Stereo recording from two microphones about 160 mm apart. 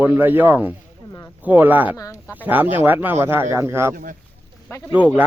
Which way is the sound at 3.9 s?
60° right (ahead or behind).